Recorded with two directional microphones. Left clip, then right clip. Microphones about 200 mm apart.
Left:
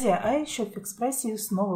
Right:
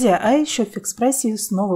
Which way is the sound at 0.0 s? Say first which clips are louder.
Right 8 dB; 35° right (ahead or behind).